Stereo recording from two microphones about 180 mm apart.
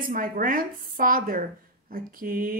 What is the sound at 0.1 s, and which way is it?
A woman's voice, 50° right (ahead or behind).